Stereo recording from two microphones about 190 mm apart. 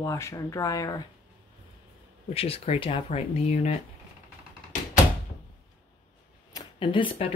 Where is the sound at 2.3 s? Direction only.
30° left (ahead or behind).